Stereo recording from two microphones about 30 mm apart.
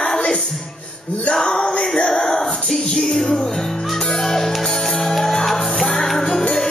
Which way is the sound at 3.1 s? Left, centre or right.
Centre.